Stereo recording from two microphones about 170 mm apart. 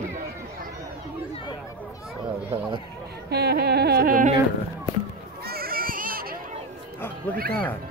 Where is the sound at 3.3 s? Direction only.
70° right (ahead or behind).